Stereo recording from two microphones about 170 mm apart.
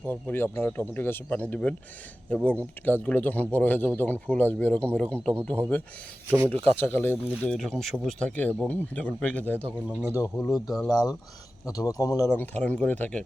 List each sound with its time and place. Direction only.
0.0 s speech: 10° left (ahead or behind)
6.5 s speech: 35° right (ahead or behind)
6.7 s speech: 10° left (ahead or behind)
9.8 s speech: 10° right (ahead or behind)
10.2 s speech: 15° left (ahead or behind)